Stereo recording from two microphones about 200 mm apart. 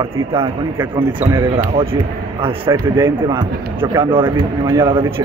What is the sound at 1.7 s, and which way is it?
Speech, 25° right (ahead or behind).